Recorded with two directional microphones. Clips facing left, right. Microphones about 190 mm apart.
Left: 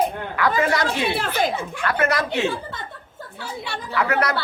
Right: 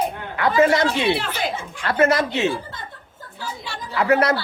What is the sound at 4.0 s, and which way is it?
Speech, 25° right (ahead or behind).